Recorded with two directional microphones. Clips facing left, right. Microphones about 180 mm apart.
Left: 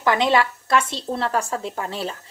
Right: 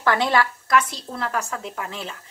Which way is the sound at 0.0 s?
20° left (ahead or behind).